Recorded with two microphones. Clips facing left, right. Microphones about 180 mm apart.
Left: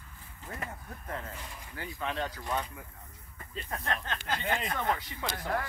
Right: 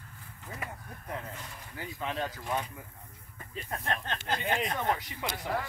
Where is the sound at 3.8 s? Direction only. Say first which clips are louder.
Right 1 dB; 25° right (ahead or behind).